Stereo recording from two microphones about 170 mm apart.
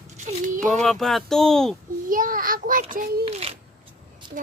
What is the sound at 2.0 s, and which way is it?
A child's voice, 55° right (ahead or behind).